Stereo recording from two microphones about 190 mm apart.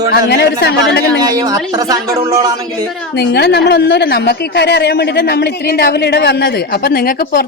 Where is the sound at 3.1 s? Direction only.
60° left (ahead or behind).